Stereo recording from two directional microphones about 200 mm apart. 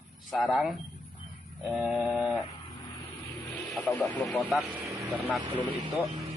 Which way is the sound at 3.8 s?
5° left (ahead or behind).